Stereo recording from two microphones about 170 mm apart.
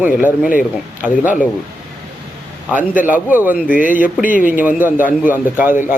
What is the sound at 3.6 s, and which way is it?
Speech, 50° left (ahead or behind).